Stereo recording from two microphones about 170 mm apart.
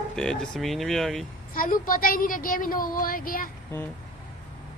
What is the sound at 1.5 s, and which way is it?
A woman's voice, 55° left (ahead or behind).